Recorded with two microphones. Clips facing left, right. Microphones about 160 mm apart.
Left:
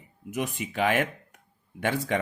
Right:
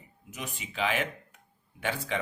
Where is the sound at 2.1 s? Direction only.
50° left (ahead or behind).